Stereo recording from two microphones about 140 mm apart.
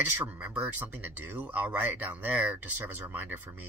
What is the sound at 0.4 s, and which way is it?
Speech, 10° right (ahead or behind).